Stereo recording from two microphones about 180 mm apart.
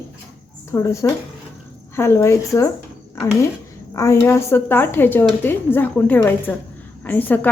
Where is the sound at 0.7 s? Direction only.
15° left (ahead or behind).